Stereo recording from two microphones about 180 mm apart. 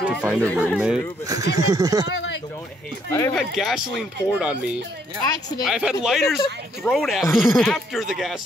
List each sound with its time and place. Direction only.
0.0 s a sound: 10° right (ahead or behind)
0.7 s speech: 5° right (ahead or behind)
1.2 s speech: 20° right (ahead or behind)
2.0 s speech: 85° left
3.1 s speech: 15° left (ahead or behind)
3.3 s speech: centre (ahead or behind)